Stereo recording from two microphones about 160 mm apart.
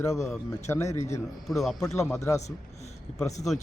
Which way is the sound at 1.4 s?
Centre (ahead or behind).